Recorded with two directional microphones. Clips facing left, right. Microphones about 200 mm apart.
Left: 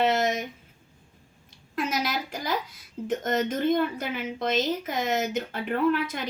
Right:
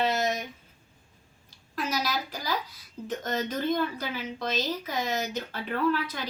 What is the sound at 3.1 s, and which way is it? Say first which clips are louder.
A woman's voice: left 5 dB; 25° left (ahead or behind).